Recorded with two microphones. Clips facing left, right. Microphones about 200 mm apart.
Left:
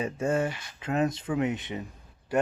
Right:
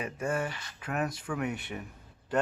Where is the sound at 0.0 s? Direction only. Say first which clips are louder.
Left 5 dB; 25° left (ahead or behind).